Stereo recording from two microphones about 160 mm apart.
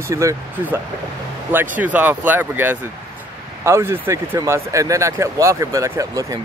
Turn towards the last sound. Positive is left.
turn(degrees=-20)  # may be behind; listen again after turning